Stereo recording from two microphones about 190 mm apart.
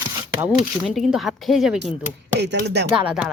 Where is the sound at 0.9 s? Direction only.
Centre (ahead or behind).